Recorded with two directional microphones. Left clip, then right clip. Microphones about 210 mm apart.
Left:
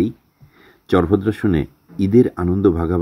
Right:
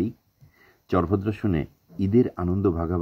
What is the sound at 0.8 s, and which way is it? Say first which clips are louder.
Speech: left 8 dB; 20° left (ahead or behind).